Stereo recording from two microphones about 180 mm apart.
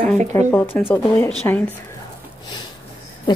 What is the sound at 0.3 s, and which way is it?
Speech, 15° left (ahead or behind).